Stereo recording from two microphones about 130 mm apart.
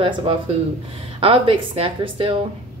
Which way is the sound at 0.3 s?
45° right (ahead or behind).